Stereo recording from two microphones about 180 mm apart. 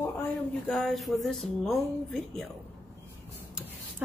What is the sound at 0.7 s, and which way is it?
Speech, centre (ahead or behind).